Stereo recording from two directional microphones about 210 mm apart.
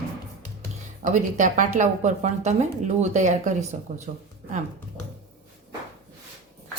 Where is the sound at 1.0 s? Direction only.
35° right (ahead or behind).